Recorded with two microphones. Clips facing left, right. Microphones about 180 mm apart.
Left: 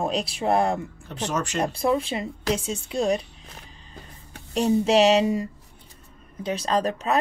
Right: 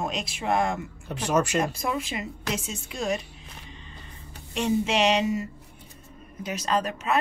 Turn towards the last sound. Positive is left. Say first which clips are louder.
# left 2 dB
turn(degrees=35)  # may be behind; listen again after turning